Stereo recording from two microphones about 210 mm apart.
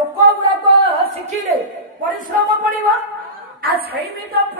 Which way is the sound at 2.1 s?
40° right (ahead or behind).